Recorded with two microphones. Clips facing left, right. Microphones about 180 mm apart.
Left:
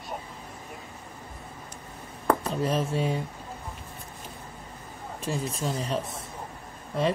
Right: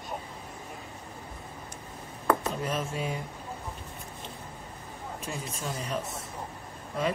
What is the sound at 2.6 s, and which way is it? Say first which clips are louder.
Speech: left 8 dB; 35° left (ahead or behind).